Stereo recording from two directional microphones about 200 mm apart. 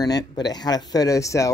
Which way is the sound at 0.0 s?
20° left (ahead or behind).